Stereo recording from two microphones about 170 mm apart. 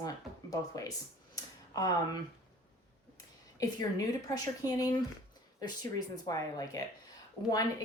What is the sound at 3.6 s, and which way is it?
Speech, 20° left (ahead or behind).